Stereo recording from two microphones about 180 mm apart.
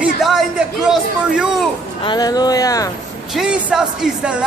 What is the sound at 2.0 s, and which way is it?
Speech, 25° left (ahead or behind).